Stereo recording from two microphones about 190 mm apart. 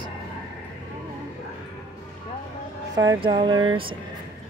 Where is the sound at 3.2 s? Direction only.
25° right (ahead or behind).